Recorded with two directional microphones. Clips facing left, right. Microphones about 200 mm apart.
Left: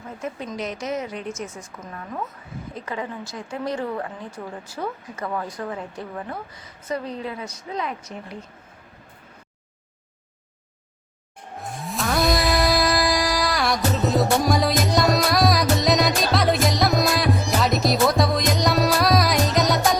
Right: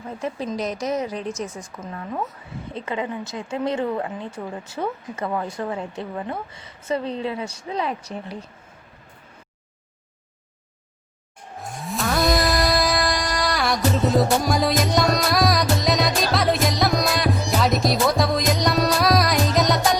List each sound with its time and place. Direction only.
0.2 s a woman's voice: 35° right (ahead or behind)
2.7 s speech: 20° right (ahead or behind)
11.8 s music: centre (ahead or behind)